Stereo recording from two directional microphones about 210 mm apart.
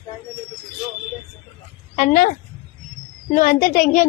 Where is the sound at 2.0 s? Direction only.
35° left (ahead or behind).